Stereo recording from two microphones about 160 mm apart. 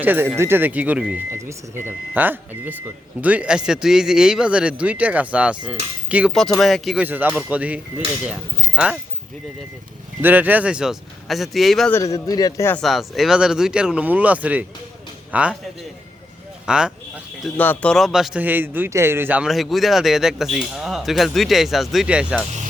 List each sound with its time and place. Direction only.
0.0 s speech: 10° right (ahead or behind)
10.2 s speech: 10° right (ahead or behind)
11.9 s a man's voice: 20° left (ahead or behind)
12.8 s a man's voice: centre (ahead or behind)
16.6 s speech: 5° right (ahead or behind)
17.6 s speech: 10° left (ahead or behind)